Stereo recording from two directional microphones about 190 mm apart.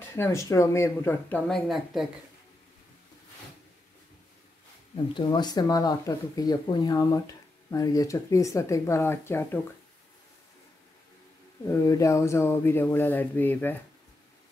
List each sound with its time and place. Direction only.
0.1 s speech: 15° left (ahead or behind)
5.1 s speech: 20° left (ahead or behind)
11.6 s speech: 15° left (ahead or behind)